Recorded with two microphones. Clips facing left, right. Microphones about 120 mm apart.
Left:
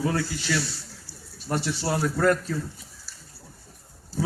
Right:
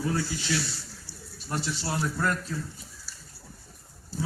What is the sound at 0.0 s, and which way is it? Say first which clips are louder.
Speech: left 3 dB; 75° left (ahead or behind).